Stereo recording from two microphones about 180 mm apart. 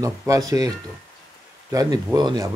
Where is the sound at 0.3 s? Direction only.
20° right (ahead or behind).